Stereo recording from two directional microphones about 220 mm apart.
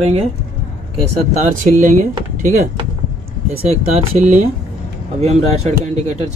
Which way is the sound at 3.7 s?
30° right (ahead or behind).